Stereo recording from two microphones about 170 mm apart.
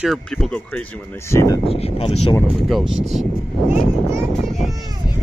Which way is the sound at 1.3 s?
20° left (ahead or behind).